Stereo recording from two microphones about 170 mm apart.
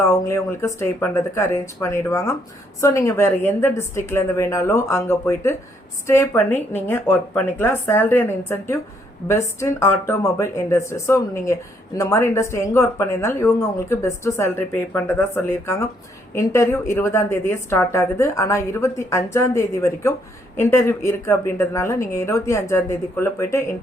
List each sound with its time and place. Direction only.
0.1 s a woman's voice: 15° left (ahead or behind)